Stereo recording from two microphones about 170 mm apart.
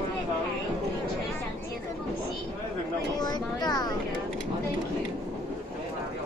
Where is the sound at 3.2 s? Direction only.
25° left (ahead or behind).